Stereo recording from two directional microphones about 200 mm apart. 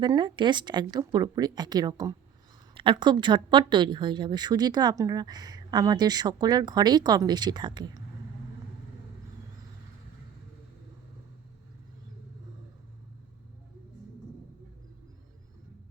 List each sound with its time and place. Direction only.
0.0 s a woman's voice: 25° right (ahead or behind)